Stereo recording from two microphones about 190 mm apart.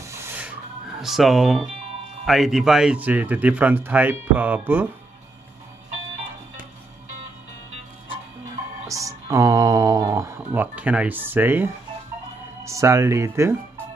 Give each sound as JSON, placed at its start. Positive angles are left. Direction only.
{"t": 0.0, "sound": "music", "side_deg": -15}
{"t": 1.0, "sound": "speech", "side_deg": 0}
{"t": 8.8, "sound": "speech", "side_deg": -15}